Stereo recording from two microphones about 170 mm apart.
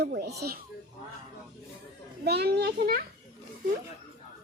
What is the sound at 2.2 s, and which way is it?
Speech, 70° right (ahead or behind).